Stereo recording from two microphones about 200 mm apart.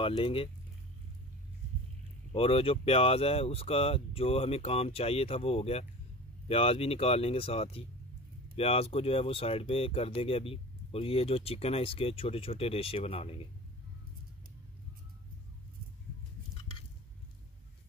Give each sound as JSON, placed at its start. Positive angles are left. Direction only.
{"t": 0.0, "sound": "speech", "side_deg": 25}
{"t": 2.3, "sound": "speech", "side_deg": 30}